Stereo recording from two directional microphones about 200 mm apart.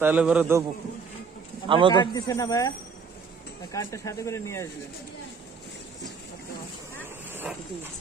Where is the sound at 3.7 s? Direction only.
15° left (ahead or behind).